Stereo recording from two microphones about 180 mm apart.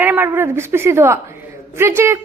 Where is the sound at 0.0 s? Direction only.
10° right (ahead or behind).